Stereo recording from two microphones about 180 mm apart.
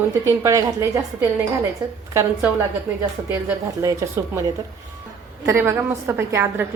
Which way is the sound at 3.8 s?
15° right (ahead or behind).